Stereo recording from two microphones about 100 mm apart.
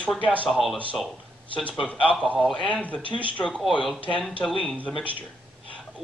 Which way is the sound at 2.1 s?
10° left (ahead or behind).